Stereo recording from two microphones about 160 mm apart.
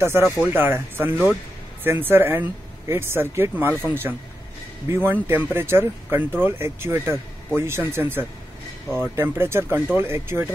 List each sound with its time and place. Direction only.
0.0 s speech: 15° right (ahead or behind)